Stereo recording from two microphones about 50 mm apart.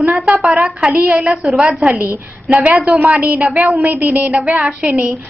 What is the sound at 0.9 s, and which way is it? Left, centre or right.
Speech, right.